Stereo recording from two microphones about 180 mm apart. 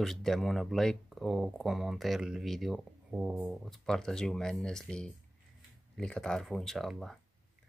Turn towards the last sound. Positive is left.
turn(degrees=0)  # may be behind; listen again after turning